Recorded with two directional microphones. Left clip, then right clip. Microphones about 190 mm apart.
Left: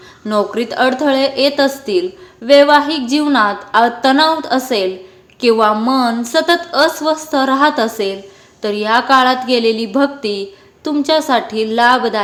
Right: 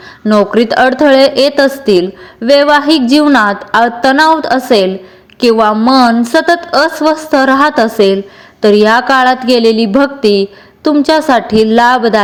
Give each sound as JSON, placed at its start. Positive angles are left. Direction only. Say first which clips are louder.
{"t": 0.3, "sound": "a woman's voice", "louder": "right 7 dB", "side_deg": -30}